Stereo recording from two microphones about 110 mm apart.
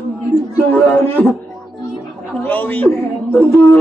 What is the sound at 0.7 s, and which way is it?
Speech, 15° left (ahead or behind).